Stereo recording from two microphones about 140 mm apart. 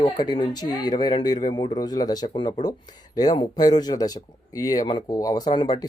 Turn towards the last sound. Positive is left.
turn(degrees=30)  # may be behind; listen again after turning